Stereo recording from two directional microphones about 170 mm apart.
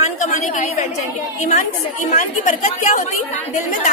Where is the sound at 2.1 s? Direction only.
45° left (ahead or behind).